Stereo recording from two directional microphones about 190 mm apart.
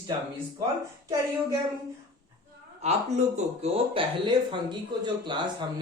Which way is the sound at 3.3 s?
30° right (ahead or behind).